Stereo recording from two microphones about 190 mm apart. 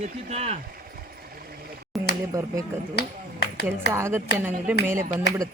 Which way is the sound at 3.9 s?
15° right (ahead or behind).